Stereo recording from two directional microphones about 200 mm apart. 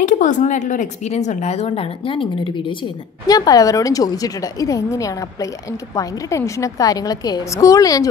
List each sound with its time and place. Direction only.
0.0 s a woman's voice: 40° left (ahead or behind); by 8.1 s 15° left (ahead or behind)